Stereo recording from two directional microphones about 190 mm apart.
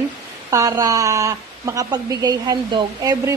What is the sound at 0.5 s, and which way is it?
A woman's voice, 15° right (ahead or behind).